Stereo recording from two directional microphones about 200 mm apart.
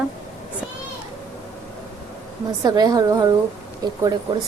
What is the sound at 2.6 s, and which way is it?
Speech, 20° right (ahead or behind).